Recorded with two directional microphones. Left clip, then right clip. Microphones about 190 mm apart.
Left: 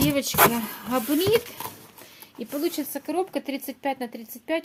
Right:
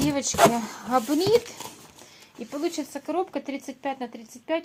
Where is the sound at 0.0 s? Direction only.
5° left (ahead or behind).